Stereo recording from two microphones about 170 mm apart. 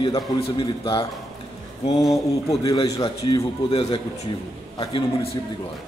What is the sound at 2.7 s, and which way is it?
A man's voice, 25° left (ahead or behind).